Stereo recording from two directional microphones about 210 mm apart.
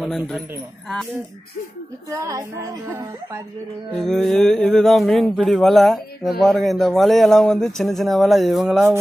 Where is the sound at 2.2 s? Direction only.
15° right (ahead or behind).